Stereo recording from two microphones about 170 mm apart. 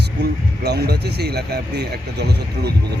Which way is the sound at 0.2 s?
80° right.